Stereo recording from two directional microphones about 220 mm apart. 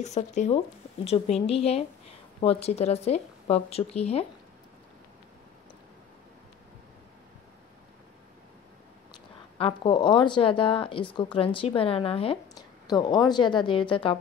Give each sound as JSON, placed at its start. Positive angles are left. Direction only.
{"t": 0.0, "sound": "speech", "side_deg": 30}
{"t": 9.6, "sound": "speech", "side_deg": 25}